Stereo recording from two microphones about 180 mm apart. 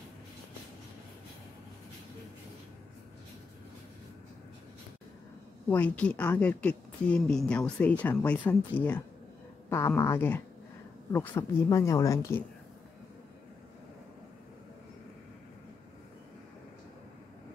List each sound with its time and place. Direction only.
5.7 s a woman's voice: 10° left (ahead or behind)